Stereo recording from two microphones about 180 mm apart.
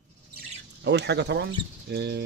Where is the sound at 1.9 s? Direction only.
65° right (ahead or behind).